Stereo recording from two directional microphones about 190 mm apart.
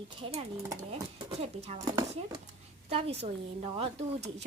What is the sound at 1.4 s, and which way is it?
Speech, 35° right (ahead or behind).